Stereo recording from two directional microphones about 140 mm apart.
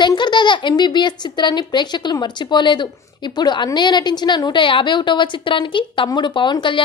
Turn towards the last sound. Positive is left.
turn(degrees=35)  # may be behind; listen again after turning